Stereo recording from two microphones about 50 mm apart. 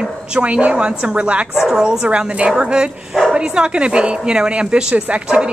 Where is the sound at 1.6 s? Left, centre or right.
Centre.